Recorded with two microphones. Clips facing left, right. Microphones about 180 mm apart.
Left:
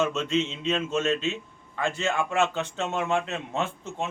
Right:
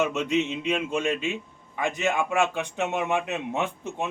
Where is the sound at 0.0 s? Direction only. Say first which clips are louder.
Right 1 dB; 15° right (ahead or behind).